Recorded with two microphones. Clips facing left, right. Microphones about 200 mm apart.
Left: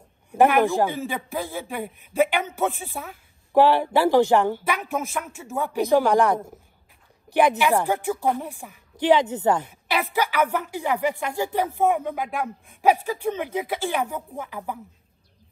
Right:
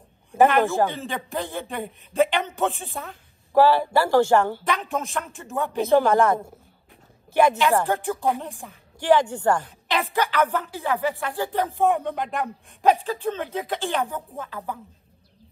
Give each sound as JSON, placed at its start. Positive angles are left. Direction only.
{"t": 0.3, "sound": "speech", "side_deg": 15}
{"t": 1.3, "sound": "a man's voice", "side_deg": 0}
{"t": 2.1, "sound": "a man's voice", "side_deg": 10}
{"t": 3.5, "sound": "speech", "side_deg": 15}
{"t": 5.1, "sound": "a man's voice", "side_deg": 0}
{"t": 5.8, "sound": "speech", "side_deg": 15}
{"t": 11.9, "sound": "a man's voice", "side_deg": 0}
{"t": 12.8, "sound": "speech", "side_deg": 15}